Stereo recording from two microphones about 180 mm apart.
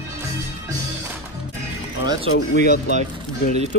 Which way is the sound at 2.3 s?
75° left (ahead or behind).